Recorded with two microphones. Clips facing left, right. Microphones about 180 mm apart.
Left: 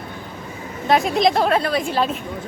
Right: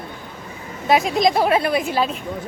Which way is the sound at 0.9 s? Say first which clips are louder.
Even; centre (ahead or behind).